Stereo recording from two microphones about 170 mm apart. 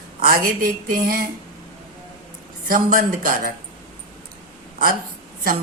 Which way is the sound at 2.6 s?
55° right (ahead or behind).